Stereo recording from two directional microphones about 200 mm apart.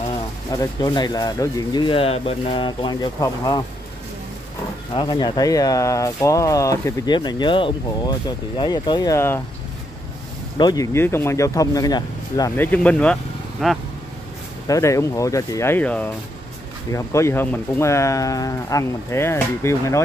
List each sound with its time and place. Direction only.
0.5 s speech: 20° left (ahead or behind)
4.9 s speech: 20° left (ahead or behind)
10.6 s speech: 20° left (ahead or behind); by 13.7 s centre (ahead or behind)
14.7 s speech: 15° left (ahead or behind)